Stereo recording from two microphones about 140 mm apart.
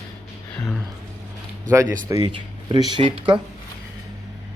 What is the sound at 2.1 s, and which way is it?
Speech, 25° right (ahead or behind).